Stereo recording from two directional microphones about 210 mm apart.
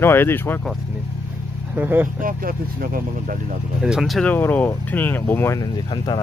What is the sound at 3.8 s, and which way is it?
Speech, 5° right (ahead or behind).